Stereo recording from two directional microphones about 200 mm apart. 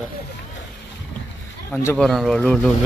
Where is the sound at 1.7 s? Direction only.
5° left (ahead or behind).